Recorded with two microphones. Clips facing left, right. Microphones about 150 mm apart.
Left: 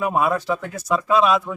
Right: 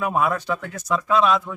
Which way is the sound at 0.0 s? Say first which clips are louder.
Left 2 dB; 10° left (ahead or behind).